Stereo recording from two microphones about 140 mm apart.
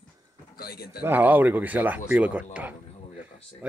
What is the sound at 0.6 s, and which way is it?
Speech, 90° left.